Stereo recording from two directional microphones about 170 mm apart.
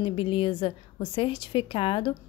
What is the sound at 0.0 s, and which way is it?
A woman's voice, 30° left (ahead or behind).